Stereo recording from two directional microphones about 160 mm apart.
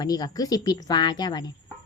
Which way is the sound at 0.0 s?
25° left (ahead or behind).